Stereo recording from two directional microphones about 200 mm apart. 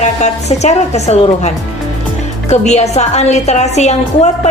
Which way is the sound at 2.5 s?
35° left (ahead or behind).